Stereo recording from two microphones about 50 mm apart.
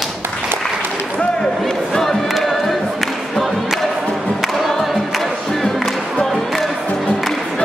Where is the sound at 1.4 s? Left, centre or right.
Centre.